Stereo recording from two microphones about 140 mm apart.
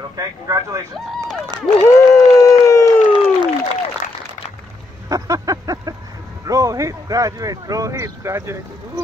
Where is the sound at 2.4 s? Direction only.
20° left (ahead or behind).